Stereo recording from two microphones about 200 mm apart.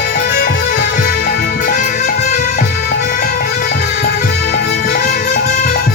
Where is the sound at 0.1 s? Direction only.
50° left (ahead or behind).